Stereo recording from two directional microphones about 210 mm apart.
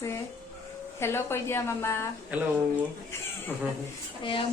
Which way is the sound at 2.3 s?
5° right (ahead or behind).